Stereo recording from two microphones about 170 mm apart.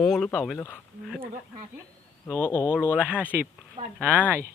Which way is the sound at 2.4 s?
15° left (ahead or behind).